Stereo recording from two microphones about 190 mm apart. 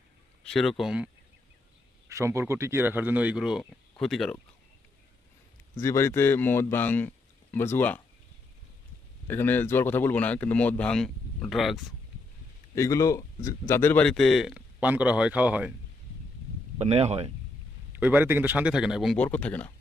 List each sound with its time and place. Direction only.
0.4 s speech: centre (ahead or behind)
2.0 s speech: 15° right (ahead or behind); by 4.4 s centre (ahead or behind)
5.7 s a man's voice: 15° left (ahead or behind)
9.2 s a man's voice: 10° left (ahead or behind)
12.7 s speech: 15° left (ahead or behind); by 15.7 s 5° right (ahead or behind)
16.7 s speech: 35° right (ahead or behind)
17.9 s speech: 10° right (ahead or behind); by 19.7 s 5° left (ahead or behind)